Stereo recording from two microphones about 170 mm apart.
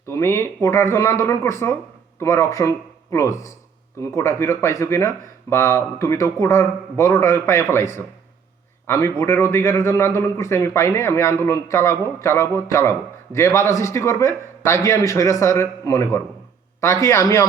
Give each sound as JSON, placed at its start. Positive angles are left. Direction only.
{"t": 0.1, "sound": "a man's voice", "side_deg": 15}
{"t": 8.9, "sound": "a man's voice", "side_deg": 15}